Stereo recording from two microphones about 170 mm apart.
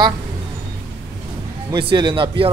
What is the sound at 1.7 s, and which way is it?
Speech, 25° right (ahead or behind).